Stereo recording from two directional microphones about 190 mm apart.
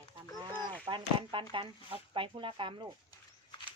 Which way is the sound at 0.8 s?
25° right (ahead or behind).